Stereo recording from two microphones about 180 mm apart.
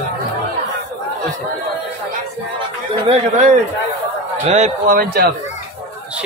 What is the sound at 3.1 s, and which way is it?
Speech, 35° right (ahead or behind).